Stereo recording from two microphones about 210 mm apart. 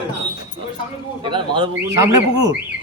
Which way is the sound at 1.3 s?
25° right (ahead or behind).